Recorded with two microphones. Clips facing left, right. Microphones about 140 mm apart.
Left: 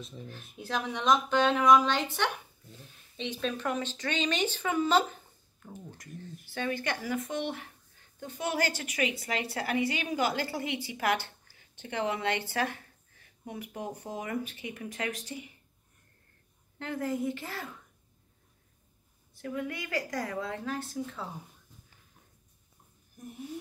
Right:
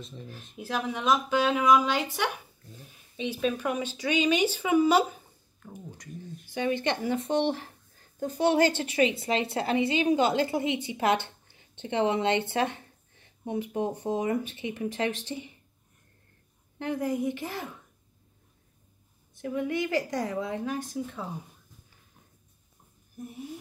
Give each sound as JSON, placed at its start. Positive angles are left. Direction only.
{"t": 0.0, "sound": "speech", "side_deg": 0}
{"t": 6.5, "sound": "a woman's voice", "side_deg": -20}
{"t": 16.7, "sound": "speech", "side_deg": -20}
{"t": 19.3, "sound": "a woman's voice", "side_deg": -20}